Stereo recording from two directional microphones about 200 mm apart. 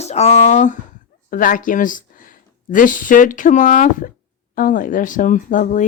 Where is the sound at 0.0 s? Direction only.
35° left (ahead or behind).